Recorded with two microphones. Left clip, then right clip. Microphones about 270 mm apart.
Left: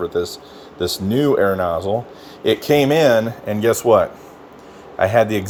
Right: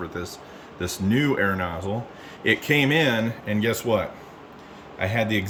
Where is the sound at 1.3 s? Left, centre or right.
Centre.